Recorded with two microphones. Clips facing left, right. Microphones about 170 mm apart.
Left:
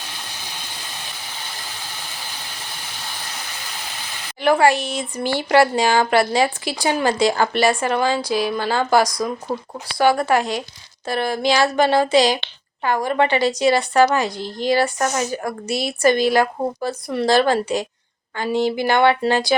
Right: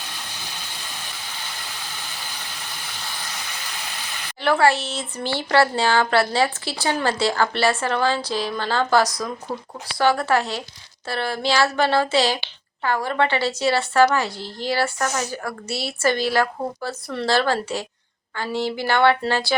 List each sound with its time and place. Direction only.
4.4 s a woman's voice: 15° left (ahead or behind)